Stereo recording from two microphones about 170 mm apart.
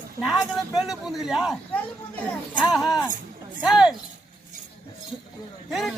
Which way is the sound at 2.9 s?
20° left (ahead or behind).